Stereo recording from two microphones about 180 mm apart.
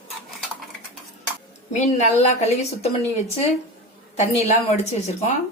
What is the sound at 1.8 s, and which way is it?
Speech, 40° left (ahead or behind).